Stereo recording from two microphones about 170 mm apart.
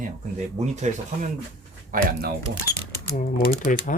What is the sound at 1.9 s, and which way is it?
Speech, 55° right (ahead or behind).